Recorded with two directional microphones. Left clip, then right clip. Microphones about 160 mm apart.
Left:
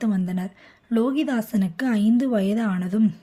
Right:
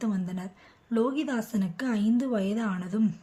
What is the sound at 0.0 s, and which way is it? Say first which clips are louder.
A woman's voice: left 6 dB; 35° left (ahead or behind).